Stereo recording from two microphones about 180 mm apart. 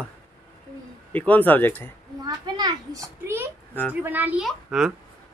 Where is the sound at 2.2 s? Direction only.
20° right (ahead or behind).